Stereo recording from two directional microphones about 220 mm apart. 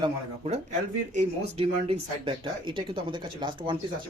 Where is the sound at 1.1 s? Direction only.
25° right (ahead or behind).